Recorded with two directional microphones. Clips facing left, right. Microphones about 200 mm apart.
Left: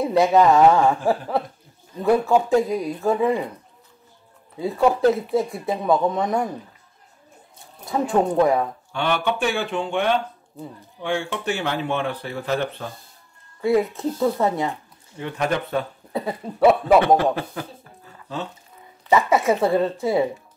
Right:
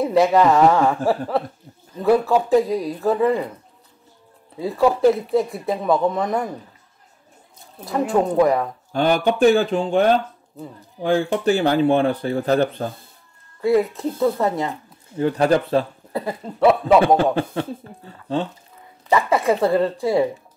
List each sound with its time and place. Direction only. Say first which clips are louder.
0.0 s speech: right 1 dB; centre (ahead or behind)
4.6 s speech: right 1 dB; centre (ahead or behind)
8.1 s speech: right 1 dB; centre (ahead or behind)
8.9 s speech: right 5 dB; 35° right (ahead or behind)
13.6 s speech: right 2 dB; centre (ahead or behind)
15.1 s speech: right 7 dB; 35° right (ahead or behind)
16.1 s speech: right 1 dB; centre (ahead or behind)
16.8 s speech: right 1 dB; 25° right (ahead or behind)
19.1 s speech: even; centre (ahead or behind)